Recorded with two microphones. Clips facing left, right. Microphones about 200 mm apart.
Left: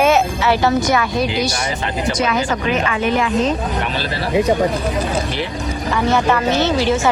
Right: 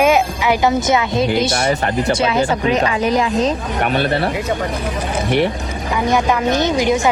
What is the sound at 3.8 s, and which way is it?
Speech, 55° right (ahead or behind).